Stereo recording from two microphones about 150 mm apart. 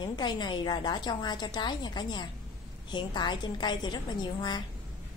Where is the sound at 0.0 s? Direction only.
30° left (ahead or behind).